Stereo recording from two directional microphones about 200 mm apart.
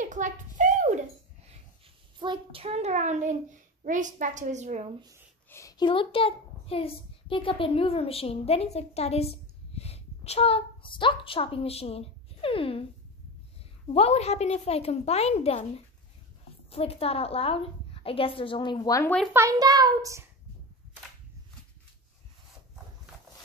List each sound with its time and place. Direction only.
0.0 s a sound: 40° right (ahead or behind)
2.1 s a child's voice: 25° right (ahead or behind)
5.5 s a child's voice: 15° left (ahead or behind)
13.8 s a woman's voice: 30° left (ahead or behind)
16.7 s a woman's voice: 30° left (ahead or behind)
19.3 s a child's voice: 15° right (ahead or behind)